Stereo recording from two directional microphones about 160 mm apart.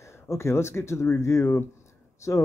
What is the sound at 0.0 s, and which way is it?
A man's voice, 15° left (ahead or behind).